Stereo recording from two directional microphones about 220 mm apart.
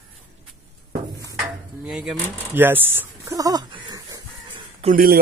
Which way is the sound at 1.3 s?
5° right (ahead or behind).